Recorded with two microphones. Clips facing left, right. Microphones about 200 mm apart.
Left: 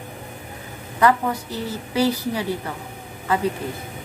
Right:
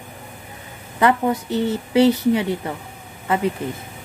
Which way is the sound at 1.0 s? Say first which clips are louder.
Right 1 dB; 25° right (ahead or behind).